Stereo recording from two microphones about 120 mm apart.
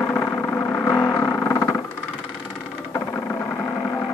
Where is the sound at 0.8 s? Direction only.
20° left (ahead or behind).